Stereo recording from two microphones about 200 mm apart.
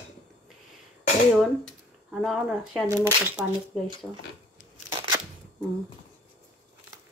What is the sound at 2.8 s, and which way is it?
Speech, 15° right (ahead or behind).